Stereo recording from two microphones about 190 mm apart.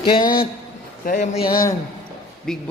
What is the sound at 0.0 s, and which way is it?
Speech, 25° left (ahead or behind).